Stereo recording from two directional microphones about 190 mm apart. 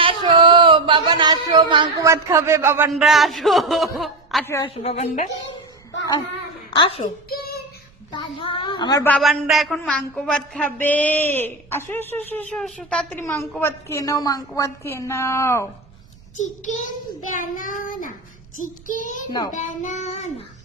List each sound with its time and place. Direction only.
0.0 s speech: 25° right (ahead or behind)
2.9 s a man's voice: centre (ahead or behind)
4.6 s child singing: 30° left (ahead or behind)
6.7 s a woman's voice: 25° left (ahead or behind)
7.3 s child singing: 55° left (ahead or behind)
8.1 s a woman's voice: 25° left (ahead or behind)
9.0 s a man's voice: 5° left (ahead or behind)
9.3 s a sound: centre (ahead or behind); by 15.7 s 15° left (ahead or behind)
16.4 s child singing: 40° left (ahead or behind)